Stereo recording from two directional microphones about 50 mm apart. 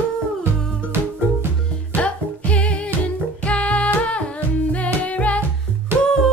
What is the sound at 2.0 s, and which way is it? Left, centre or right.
Music, left.